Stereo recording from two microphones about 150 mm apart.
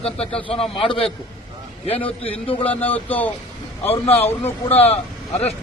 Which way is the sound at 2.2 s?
40° left (ahead or behind).